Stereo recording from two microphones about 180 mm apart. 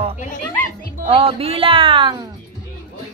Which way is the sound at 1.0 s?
30° right (ahead or behind).